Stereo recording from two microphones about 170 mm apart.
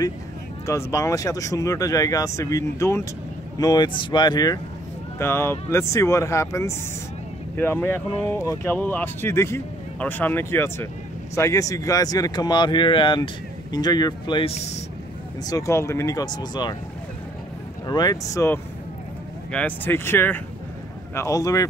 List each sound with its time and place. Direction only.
0.7 s speech: 15° left (ahead or behind)
5.2 s speech: 15° left (ahead or behind)
17.8 s speech: 25° left (ahead or behind)